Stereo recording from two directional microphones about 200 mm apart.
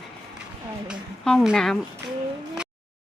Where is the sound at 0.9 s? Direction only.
Centre (ahead or behind).